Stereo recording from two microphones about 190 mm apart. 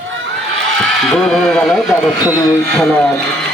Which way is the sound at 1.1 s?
Centre (ahead or behind).